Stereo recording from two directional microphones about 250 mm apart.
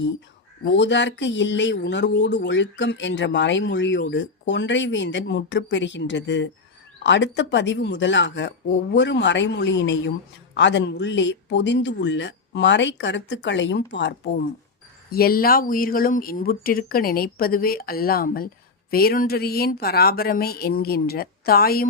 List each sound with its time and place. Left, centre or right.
0.6 s speech: left